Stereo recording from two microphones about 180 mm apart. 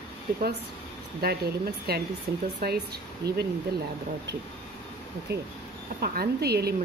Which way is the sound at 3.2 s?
65° right (ahead or behind).